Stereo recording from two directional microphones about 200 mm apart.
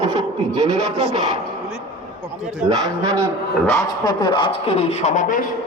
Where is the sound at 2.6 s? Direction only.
20° right (ahead or behind).